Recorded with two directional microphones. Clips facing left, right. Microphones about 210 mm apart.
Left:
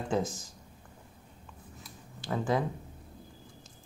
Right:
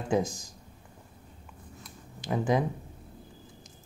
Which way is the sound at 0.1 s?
15° right (ahead or behind).